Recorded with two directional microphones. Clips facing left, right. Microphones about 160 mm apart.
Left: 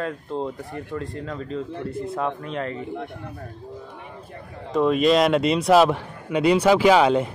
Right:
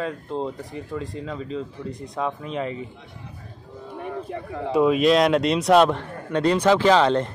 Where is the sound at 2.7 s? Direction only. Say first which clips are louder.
Left 5 dB; 60° left (ahead or behind).